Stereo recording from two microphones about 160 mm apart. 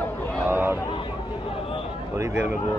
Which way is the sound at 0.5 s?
15° right (ahead or behind).